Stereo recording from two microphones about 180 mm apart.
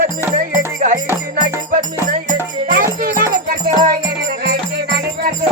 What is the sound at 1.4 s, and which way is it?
Music, 45° right (ahead or behind).